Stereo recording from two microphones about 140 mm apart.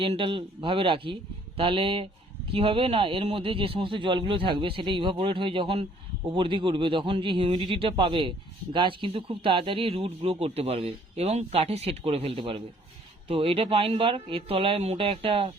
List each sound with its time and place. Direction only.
0.0 s a man's voice: 40° right (ahead or behind)